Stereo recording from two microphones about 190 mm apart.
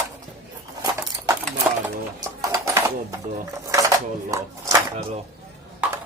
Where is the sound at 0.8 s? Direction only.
15° right (ahead or behind).